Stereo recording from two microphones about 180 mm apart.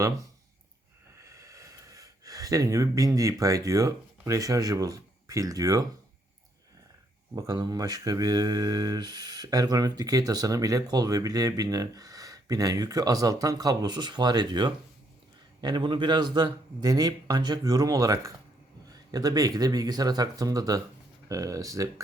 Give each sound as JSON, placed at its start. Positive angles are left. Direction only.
{"t": 1.2, "sound": "speech", "side_deg": -15}
{"t": 7.3, "sound": "speech", "side_deg": -20}